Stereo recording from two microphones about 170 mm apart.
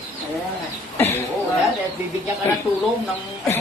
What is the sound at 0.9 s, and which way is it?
Cough, 10° left (ahead or behind).